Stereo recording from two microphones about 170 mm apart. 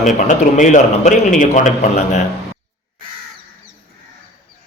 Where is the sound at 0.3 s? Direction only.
45° left (ahead or behind).